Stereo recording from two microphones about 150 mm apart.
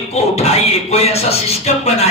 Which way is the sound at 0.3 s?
45° left (ahead or behind).